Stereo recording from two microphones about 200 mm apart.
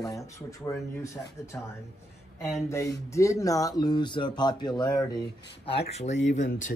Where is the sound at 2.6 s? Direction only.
15° left (ahead or behind).